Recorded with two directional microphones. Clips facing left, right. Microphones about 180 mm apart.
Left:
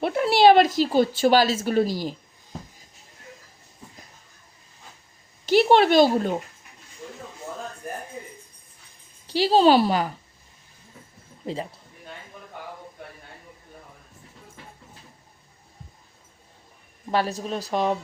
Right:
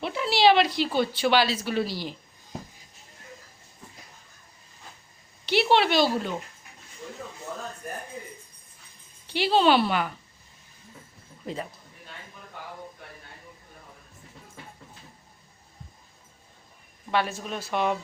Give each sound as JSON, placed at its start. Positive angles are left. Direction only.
{"t": 0.0, "sound": "speech", "side_deg": 55}
{"t": 5.5, "sound": "speech", "side_deg": 45}
{"t": 9.2, "sound": "a woman's voice", "side_deg": 40}
{"t": 11.4, "sound": "a man's voice", "side_deg": 30}
{"t": 17.1, "sound": "a woman's voice", "side_deg": 40}